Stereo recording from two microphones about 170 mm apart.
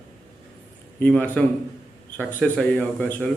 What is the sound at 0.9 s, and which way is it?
A man's voice, 10° left (ahead or behind).